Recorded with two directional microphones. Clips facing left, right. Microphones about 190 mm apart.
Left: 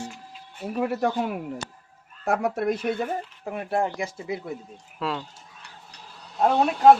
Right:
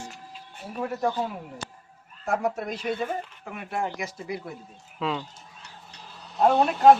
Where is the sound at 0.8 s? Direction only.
75° left (ahead or behind).